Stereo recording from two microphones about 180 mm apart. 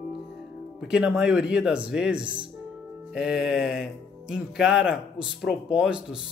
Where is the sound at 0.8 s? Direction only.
5° right (ahead or behind).